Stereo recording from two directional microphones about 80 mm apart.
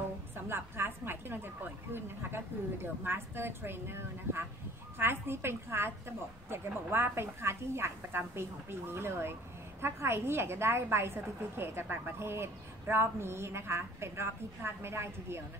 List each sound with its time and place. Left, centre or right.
0.5 s a woman's voice: right